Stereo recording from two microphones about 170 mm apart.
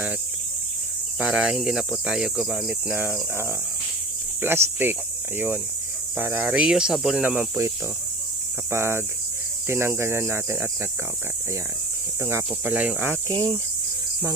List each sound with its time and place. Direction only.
1.2 s speech: 5° right (ahead or behind)
6.1 s speech: 10° right (ahead or behind)
8.7 s speech: 15° right (ahead or behind)
12.2 s speech: 15° right (ahead or behind)
13.3 s speech: 20° right (ahead or behind)